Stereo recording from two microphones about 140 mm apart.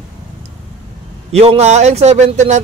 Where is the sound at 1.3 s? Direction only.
45° right (ahead or behind).